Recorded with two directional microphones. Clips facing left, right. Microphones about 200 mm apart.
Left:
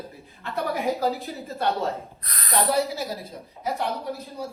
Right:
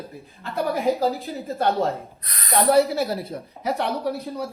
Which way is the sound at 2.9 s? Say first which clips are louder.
Right 7 dB; 65° right (ahead or behind).